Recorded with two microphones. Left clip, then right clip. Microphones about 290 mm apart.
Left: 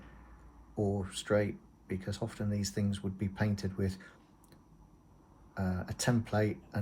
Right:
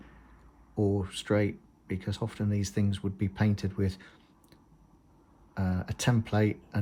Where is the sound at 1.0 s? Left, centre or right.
Right.